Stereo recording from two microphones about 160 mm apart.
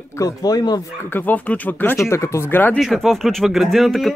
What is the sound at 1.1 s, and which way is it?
Speech, 10° left (ahead or behind).